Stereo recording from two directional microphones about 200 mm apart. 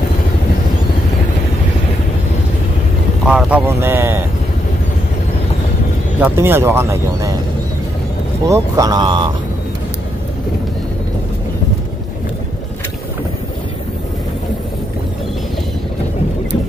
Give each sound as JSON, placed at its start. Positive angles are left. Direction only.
{"t": 3.3, "sound": "speech", "side_deg": -5}
{"t": 6.2, "sound": "speech", "side_deg": -10}
{"t": 8.5, "sound": "speech", "side_deg": -15}